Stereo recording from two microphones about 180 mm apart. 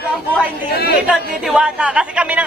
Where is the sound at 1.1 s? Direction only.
5° right (ahead or behind).